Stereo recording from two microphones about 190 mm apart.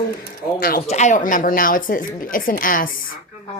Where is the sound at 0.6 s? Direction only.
50° left (ahead or behind).